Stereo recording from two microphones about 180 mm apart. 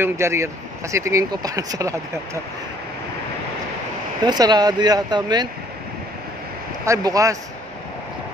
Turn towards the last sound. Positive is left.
turn(degrees=-20)  # may be behind; listen again after turning